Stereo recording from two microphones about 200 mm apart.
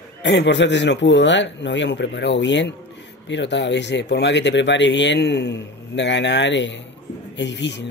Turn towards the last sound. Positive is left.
turn(degrees=60)  # may be behind; listen again after turning